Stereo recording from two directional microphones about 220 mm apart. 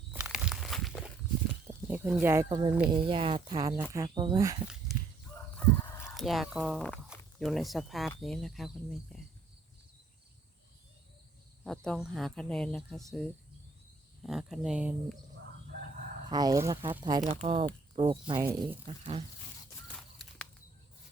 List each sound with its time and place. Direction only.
0.1 s walk: 5° right (ahead or behind)
1.6 s speech: 5° right (ahead or behind)
2.9 s speech: 25° right (ahead or behind)
5.5 s speech: centre (ahead or behind)
11.6 s speech: 5° left (ahead or behind)
15.7 s chicken: 40° right (ahead or behind)
16.3 s speech: 15° right (ahead or behind)
19.9 s walk: 5° left (ahead or behind)